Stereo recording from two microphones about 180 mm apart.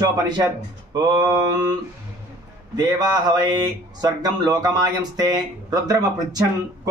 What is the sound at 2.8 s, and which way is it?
Speech, 20° right (ahead or behind).